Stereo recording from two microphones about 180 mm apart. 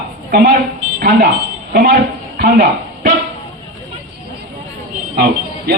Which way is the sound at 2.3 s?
55° right (ahead or behind).